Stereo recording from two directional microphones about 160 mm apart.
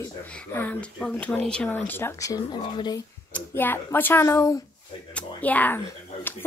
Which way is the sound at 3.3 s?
10° left (ahead or behind).